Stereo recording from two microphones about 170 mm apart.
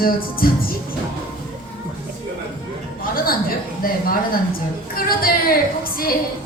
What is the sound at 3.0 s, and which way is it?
A woman's voice, 60° left (ahead or behind).